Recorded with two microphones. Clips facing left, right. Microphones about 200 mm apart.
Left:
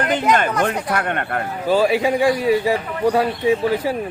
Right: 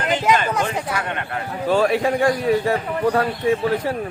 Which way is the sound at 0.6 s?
55° left (ahead or behind).